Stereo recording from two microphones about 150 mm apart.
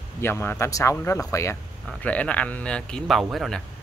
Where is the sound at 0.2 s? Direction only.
15° left (ahead or behind).